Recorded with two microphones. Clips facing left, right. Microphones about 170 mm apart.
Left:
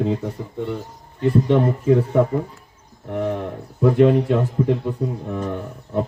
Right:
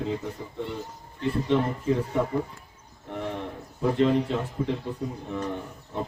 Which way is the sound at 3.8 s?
60° left (ahead or behind).